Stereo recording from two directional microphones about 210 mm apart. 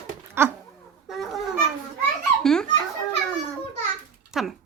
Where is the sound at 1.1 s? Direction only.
Centre (ahead or behind).